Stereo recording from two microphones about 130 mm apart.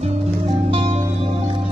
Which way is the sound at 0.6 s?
50° right (ahead or behind).